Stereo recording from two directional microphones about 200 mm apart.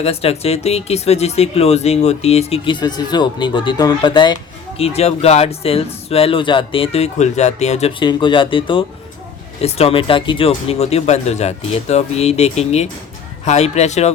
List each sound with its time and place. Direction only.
0.0 s speech: 30° left (ahead or behind)